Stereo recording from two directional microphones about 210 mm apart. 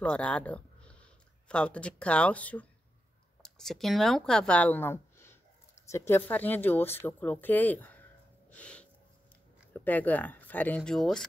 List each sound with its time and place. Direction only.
0.0 s speech: 5° left (ahead or behind)